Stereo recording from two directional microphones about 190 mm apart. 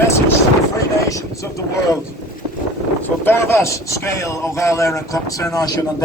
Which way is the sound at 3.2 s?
10° left (ahead or behind).